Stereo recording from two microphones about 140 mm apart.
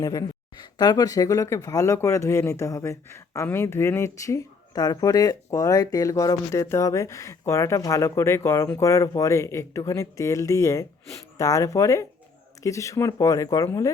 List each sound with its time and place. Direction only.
0.0 s speech: 25° left (ahead or behind)